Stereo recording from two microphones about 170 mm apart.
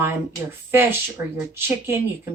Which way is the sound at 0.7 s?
15° right (ahead or behind).